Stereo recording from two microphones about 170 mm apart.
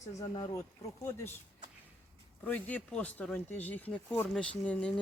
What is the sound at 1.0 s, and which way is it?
Speech, 15° left (ahead or behind).